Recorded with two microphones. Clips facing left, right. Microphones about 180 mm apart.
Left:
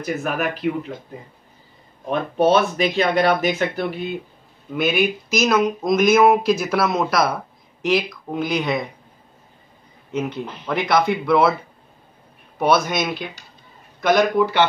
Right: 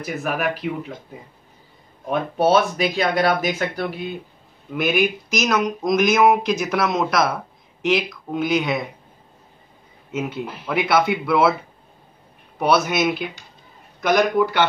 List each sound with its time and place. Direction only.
0.0 s speech: centre (ahead or behind)
2.0 s speech: 5° right (ahead or behind)
10.1 s speech: 5° right (ahead or behind)
12.5 s speech: centre (ahead or behind)